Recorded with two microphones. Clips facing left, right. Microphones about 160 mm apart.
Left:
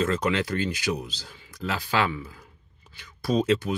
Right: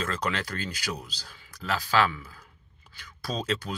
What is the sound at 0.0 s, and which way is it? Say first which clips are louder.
Speech: left 6 dB; 25° left (ahead or behind).